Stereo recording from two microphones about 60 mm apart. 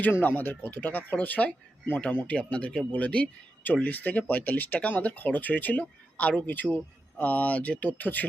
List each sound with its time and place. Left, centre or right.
0.0 s speech: left